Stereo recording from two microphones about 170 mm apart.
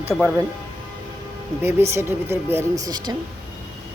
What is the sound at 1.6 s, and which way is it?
A man's voice, 15° right (ahead or behind).